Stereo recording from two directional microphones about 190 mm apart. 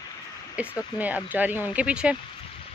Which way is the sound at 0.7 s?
10° right (ahead or behind).